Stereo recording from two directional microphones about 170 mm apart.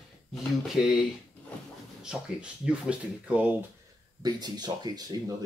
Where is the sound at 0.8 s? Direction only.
5° right (ahead or behind).